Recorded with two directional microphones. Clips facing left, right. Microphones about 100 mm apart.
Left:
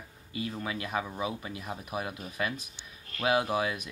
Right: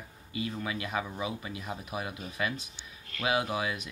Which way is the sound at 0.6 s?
40° left (ahead or behind).